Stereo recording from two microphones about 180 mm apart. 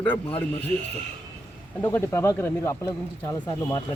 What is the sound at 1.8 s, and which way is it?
Speech, 10° left (ahead or behind).